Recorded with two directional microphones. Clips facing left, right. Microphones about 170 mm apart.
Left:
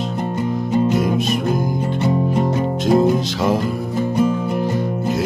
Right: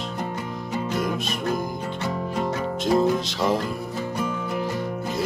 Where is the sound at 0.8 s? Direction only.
5° left (ahead or behind).